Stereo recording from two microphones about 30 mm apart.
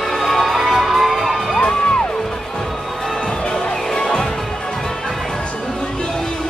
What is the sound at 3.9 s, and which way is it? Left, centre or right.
Music, centre.